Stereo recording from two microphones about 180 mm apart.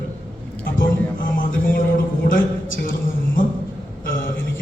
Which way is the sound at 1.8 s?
50° left (ahead or behind).